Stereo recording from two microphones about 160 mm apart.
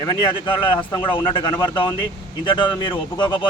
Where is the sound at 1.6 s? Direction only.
30° left (ahead or behind).